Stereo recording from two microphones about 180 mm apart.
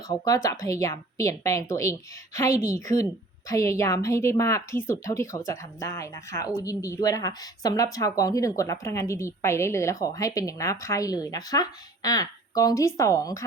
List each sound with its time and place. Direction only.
0.1 s speech: 20° left (ahead or behind)
2.5 s speech: 40° right (ahead or behind)
2.7 s speech: 20° left (ahead or behind)